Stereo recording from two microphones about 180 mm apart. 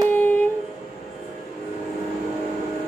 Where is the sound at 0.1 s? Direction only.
10° left (ahead or behind).